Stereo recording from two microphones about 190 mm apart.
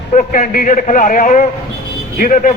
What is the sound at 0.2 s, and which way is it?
A man's voice, 45° left (ahead or behind).